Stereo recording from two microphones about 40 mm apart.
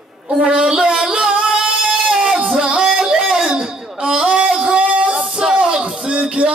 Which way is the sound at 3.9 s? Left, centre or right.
Right.